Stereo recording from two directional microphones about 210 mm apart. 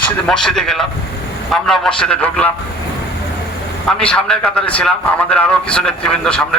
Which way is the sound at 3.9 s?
5° left (ahead or behind).